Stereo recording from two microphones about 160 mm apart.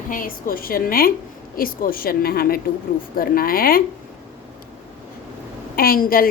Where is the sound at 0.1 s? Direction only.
60° left (ahead or behind).